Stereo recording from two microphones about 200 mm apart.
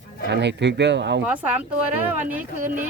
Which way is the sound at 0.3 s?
60° right (ahead or behind).